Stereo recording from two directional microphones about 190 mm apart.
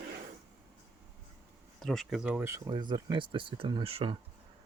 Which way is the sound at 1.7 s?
Centre (ahead or behind).